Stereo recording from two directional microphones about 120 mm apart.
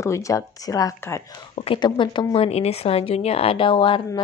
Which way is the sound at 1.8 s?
40° left (ahead or behind).